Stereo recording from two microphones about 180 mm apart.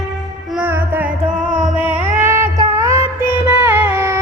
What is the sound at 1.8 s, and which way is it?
Child singing, 10° right (ahead or behind).